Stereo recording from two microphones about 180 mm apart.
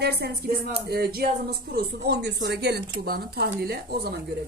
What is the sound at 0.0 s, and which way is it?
Speech, 60° right (ahead or behind).